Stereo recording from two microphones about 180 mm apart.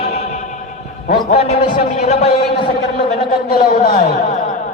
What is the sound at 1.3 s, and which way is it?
A man's voice, 35° left (ahead or behind).